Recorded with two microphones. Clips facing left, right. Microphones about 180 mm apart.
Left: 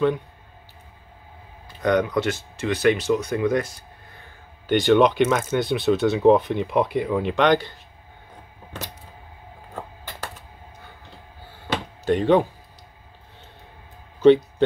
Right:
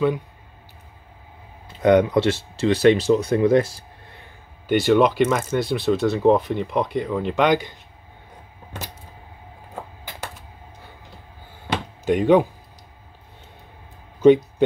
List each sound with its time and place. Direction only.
1.7 s speech: 25° right (ahead or behind)
4.6 s speech: 5° right (ahead or behind)
12.0 s speech: 10° right (ahead or behind)